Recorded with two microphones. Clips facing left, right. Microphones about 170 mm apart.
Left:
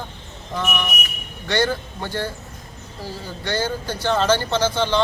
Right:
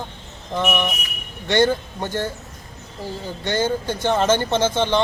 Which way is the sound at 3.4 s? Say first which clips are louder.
Right 3 dB; 20° right (ahead or behind).